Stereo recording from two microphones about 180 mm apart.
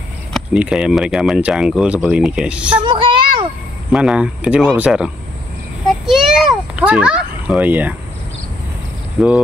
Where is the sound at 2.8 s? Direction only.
25° right (ahead or behind).